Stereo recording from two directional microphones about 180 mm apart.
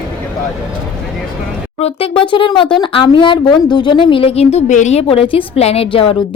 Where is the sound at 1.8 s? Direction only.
30° left (ahead or behind).